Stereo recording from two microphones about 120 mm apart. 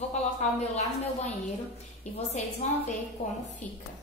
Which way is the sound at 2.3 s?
70° left (ahead or behind).